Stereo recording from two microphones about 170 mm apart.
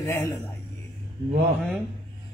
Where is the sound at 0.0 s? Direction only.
15° left (ahead or behind).